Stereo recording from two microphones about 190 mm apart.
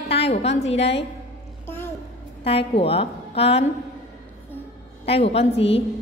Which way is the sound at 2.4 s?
30° left (ahead or behind).